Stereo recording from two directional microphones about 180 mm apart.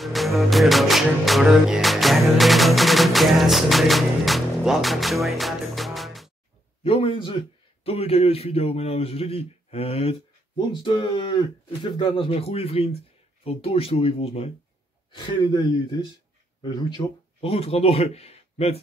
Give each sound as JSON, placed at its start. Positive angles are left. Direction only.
{"t": 0.0, "sound": "music", "side_deg": 0}
{"t": 6.8, "sound": "a sound", "side_deg": 30}
{"t": 7.8, "sound": "a man's voice", "side_deg": 35}